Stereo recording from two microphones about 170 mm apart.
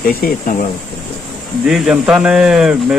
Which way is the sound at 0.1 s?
60° left (ahead or behind).